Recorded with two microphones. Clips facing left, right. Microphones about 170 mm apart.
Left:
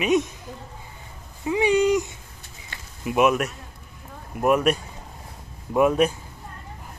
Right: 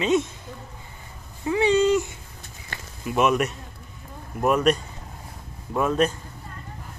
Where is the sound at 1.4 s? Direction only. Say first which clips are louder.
Even; 15° left (ahead or behind).